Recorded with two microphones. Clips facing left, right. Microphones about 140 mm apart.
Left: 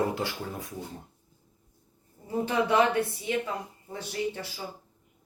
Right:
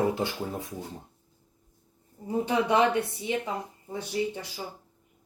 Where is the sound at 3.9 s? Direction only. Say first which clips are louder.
Right 2 dB; 15° right (ahead or behind).